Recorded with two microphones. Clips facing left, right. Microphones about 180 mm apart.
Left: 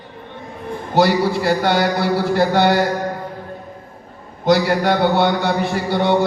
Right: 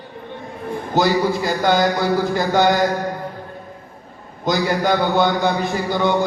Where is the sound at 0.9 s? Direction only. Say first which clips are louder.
Left 2 dB; 65° left (ahead or behind).